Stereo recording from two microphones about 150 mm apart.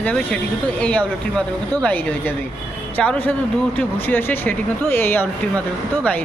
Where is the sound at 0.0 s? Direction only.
10° left (ahead or behind).